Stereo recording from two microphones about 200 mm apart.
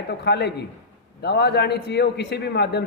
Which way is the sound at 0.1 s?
55° left (ahead or behind).